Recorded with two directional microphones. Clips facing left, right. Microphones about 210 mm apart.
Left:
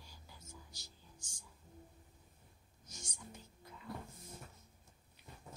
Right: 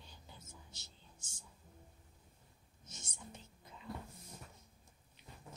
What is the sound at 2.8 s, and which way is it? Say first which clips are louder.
Whispering: left 1 dB; 25° right (ahead or behind).